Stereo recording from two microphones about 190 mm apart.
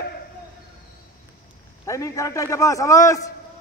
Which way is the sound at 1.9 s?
15° left (ahead or behind).